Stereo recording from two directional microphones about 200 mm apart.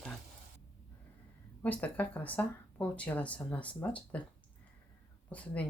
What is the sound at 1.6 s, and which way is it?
Speech, 10° left (ahead or behind).